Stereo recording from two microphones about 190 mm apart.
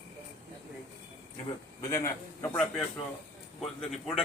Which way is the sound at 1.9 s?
15° left (ahead or behind).